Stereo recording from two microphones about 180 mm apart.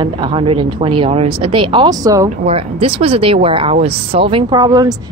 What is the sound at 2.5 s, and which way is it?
Speech, 30° right (ahead or behind).